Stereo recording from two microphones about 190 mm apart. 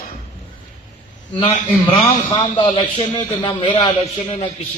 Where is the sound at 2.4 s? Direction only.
25° left (ahead or behind).